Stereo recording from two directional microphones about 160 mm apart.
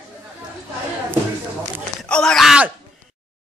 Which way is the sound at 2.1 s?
5° left (ahead or behind).